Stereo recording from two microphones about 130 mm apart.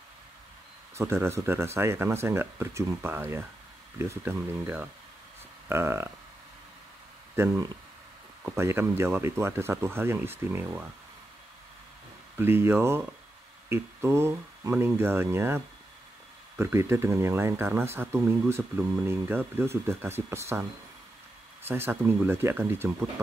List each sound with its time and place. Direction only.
0.9 s speech: 20° right (ahead or behind)
7.4 s speech: 20° right (ahead or behind)
12.4 s speech: 15° right (ahead or behind)
21.6 s speech: 20° right (ahead or behind)